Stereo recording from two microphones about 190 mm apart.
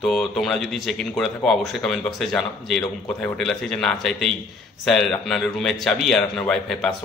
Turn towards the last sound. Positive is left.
turn(degrees=5)  # may be behind; listen again after turning